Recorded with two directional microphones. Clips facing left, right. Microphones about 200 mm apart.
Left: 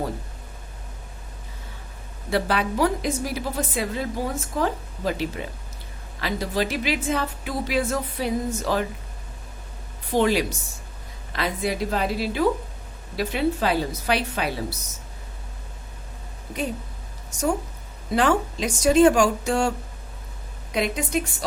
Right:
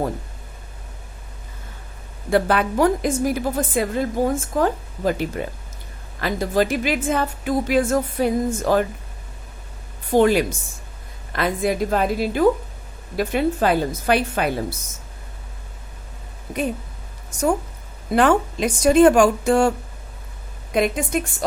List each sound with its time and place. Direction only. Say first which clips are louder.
2.3 s a woman's voice: right 5 dB; 50° right (ahead or behind)
10.1 s a woman's voice: right 5 dB; 50° right (ahead or behind)
18.1 s a woman's voice: right 4 dB; 55° right (ahead or behind)
20.7 s a woman's voice: right 5 dB; 50° right (ahead or behind)